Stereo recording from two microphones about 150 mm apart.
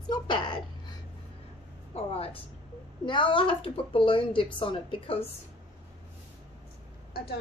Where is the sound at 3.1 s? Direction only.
30° left (ahead or behind).